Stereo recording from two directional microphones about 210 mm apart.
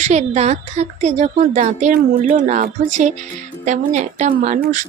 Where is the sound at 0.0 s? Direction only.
35° right (ahead or behind).